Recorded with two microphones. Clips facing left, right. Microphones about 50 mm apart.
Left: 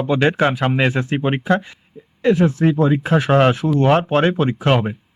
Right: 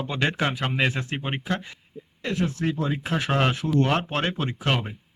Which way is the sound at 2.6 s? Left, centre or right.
Left.